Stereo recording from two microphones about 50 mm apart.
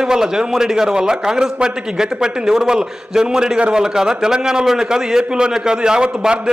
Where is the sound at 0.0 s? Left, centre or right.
Centre.